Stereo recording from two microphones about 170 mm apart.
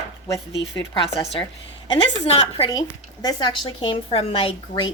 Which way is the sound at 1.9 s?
35° left (ahead or behind).